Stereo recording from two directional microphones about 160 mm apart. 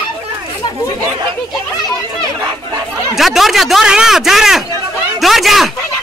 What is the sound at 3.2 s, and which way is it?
Speech, centre (ahead or behind).